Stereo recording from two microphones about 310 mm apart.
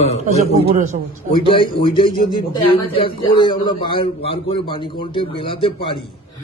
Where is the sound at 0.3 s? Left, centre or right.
Right.